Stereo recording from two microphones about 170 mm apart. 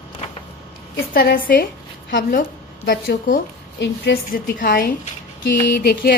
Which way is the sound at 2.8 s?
75° left (ahead or behind).